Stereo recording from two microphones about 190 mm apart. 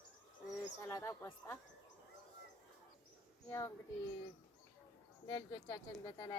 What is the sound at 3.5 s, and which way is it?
Speech, 15° left (ahead or behind).